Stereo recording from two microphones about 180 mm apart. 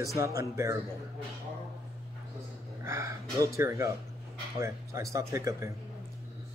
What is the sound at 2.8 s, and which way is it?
Speech, 15° right (ahead or behind).